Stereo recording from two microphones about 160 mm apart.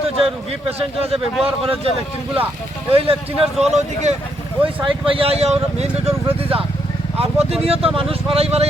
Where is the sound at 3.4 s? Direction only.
Centre (ahead or behind).